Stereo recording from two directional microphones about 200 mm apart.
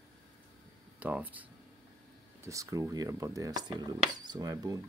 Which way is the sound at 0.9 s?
10° right (ahead or behind).